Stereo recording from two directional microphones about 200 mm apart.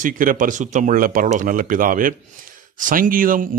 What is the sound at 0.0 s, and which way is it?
Speech, 45° right (ahead or behind).